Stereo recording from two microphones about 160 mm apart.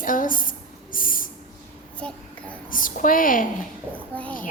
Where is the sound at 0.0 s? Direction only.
55° left (ahead or behind).